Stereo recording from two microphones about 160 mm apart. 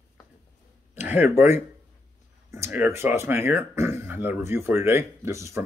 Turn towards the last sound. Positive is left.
turn(degrees=-20)  # may be behind; listen again after turning